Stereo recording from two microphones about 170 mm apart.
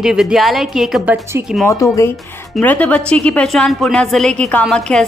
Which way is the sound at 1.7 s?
15° left (ahead or behind).